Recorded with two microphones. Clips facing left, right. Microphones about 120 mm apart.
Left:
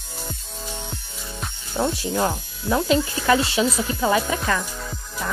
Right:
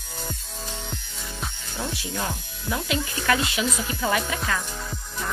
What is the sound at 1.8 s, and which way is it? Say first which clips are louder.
Speech: left 8 dB; 40° left (ahead or behind).